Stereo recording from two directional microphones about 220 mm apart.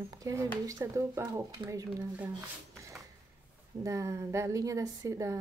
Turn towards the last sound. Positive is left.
turn(degrees=-15)  # may be behind; listen again after turning